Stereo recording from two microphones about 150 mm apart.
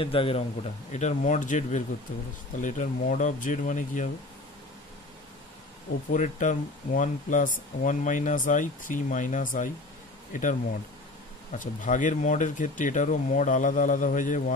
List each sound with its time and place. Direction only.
0.0 s speech: 35° left (ahead or behind); by 4.1 s 60° left (ahead or behind)
6.1 s speech: 60° left (ahead or behind)
11.5 s speech: 60° left (ahead or behind)